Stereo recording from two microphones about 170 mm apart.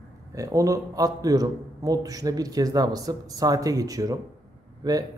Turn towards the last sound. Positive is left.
turn(degrees=-25)  # may be behind; listen again after turning